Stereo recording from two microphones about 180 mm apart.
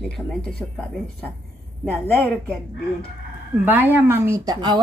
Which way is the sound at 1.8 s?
5° left (ahead or behind).